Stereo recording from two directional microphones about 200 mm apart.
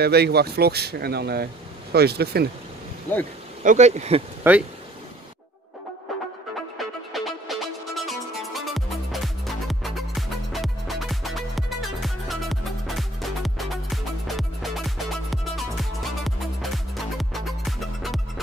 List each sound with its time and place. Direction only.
0.0 s speech: 55° right (ahead or behind)
3.6 s speech: 35° right (ahead or behind)
4.4 s speech: 10° right (ahead or behind)
6.8 s music: centre (ahead or behind)